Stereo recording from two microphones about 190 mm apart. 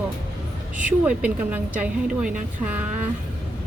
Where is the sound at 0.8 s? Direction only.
5° right (ahead or behind).